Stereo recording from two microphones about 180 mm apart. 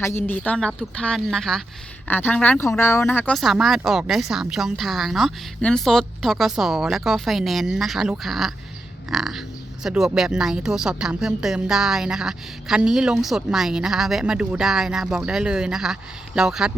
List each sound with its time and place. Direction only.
0.0 s speech: 10° left (ahead or behind)
3.3 s speech: centre (ahead or behind)